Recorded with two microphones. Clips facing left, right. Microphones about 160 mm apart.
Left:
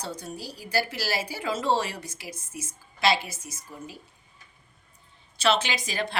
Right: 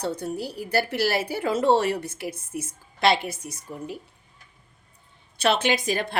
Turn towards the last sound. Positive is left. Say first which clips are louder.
# right 6 dB
turn(degrees=-55)  # may be behind; listen again after turning